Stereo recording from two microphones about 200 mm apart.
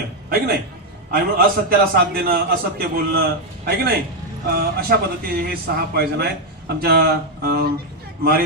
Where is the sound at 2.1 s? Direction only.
50° right (ahead or behind).